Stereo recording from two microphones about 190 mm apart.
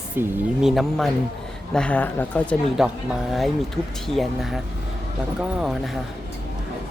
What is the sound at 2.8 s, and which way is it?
Speech, centre (ahead or behind).